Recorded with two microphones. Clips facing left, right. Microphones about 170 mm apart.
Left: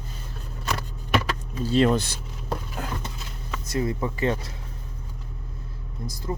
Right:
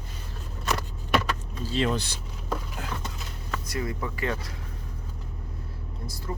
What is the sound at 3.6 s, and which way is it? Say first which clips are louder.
Speech: left 7 dB; 25° left (ahead or behind).